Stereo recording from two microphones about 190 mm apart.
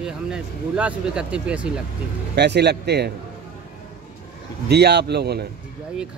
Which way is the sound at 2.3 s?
60° right (ahead or behind).